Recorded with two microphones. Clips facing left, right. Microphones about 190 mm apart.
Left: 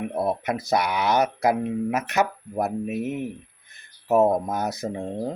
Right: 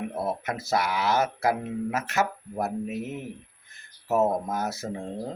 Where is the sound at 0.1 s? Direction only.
15° left (ahead or behind).